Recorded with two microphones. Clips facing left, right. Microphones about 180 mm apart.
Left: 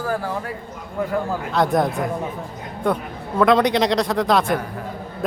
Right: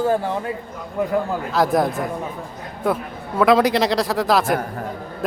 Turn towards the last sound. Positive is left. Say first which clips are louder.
# even
turn(degrees=-5)  # may be behind; listen again after turning